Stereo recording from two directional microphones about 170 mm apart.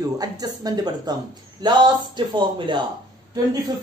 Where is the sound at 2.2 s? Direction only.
25° right (ahead or behind).